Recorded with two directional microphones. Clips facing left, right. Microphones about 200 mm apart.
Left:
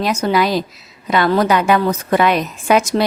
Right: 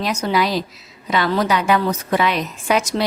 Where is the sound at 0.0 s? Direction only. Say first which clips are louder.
Left 3 dB; 50° left (ahead or behind).